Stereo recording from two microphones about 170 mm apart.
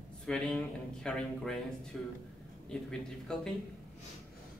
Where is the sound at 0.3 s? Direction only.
5° left (ahead or behind).